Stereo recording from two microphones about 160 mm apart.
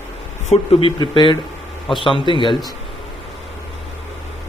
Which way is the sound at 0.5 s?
35° left (ahead or behind).